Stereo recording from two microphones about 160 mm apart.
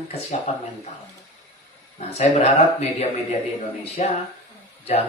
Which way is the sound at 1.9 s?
45° left (ahead or behind).